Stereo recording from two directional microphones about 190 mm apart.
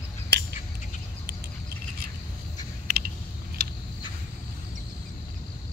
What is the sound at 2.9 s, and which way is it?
Typing, 50° right (ahead or behind).